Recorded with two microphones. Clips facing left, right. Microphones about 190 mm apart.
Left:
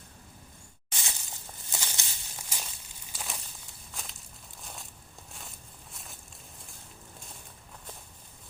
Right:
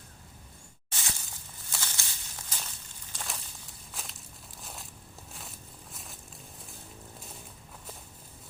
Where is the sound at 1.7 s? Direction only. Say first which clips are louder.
Left 1 dB; 15° left (ahead or behind).